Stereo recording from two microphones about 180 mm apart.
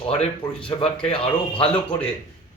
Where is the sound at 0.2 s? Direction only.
30° left (ahead or behind).